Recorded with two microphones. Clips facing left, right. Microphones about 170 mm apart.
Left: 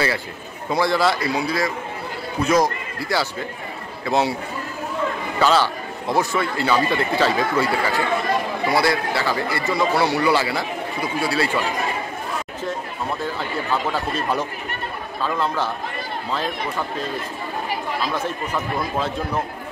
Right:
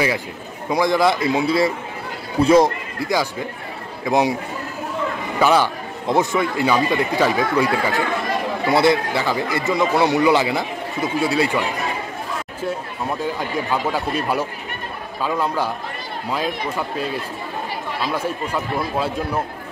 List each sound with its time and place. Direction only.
0.7 s a man's voice: 15° right (ahead or behind)
5.4 s a man's voice: 15° right (ahead or behind)
13.2 s a man's voice: 15° right (ahead or behind)